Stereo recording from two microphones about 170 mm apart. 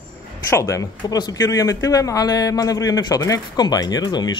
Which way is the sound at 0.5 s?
15° left (ahead or behind).